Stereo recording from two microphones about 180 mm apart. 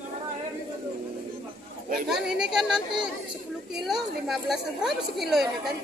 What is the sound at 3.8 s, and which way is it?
Speech, centre (ahead or behind).